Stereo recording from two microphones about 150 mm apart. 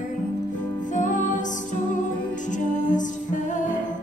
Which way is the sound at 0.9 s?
60° left (ahead or behind).